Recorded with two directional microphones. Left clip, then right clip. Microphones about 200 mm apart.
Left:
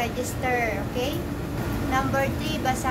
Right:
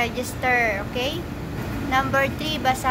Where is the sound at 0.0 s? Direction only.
35° right (ahead or behind).